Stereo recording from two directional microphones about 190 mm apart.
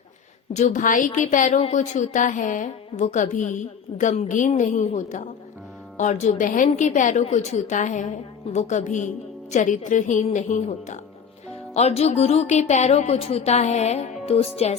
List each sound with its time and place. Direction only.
0.5 s a woman's voice: 40° left (ahead or behind)